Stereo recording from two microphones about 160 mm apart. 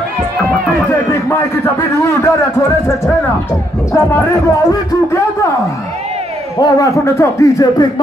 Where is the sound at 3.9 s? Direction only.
15° left (ahead or behind).